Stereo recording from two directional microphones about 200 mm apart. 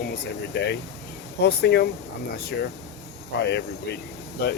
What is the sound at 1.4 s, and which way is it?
Speech, 55° left (ahead or behind).